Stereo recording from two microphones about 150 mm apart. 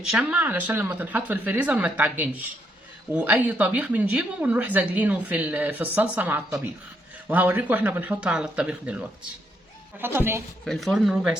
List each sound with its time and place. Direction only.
0.1 s speech: 5° right (ahead or behind)
10.7 s speech: centre (ahead or behind)